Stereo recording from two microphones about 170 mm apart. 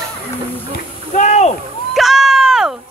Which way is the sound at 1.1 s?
45° left (ahead or behind).